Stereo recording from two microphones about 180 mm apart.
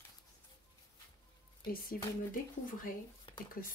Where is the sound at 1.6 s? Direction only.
55° left (ahead or behind).